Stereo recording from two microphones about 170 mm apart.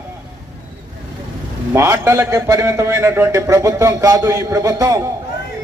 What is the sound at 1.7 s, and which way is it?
A man's voice, 15° right (ahead or behind).